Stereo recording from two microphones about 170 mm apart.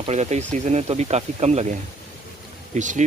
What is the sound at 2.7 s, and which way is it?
Speech, 45° right (ahead or behind).